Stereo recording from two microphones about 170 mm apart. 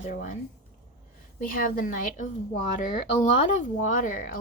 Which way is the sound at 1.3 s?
55° left (ahead or behind).